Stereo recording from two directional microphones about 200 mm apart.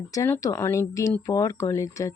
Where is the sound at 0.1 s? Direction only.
15° left (ahead or behind).